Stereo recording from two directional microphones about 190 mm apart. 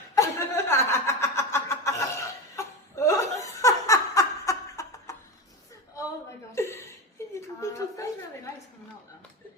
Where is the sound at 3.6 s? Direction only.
15° left (ahead or behind).